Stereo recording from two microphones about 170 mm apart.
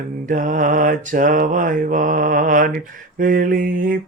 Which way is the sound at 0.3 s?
50° right (ahead or behind).